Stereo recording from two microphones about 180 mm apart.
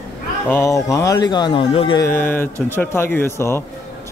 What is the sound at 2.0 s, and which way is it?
Speech, 10° left (ahead or behind).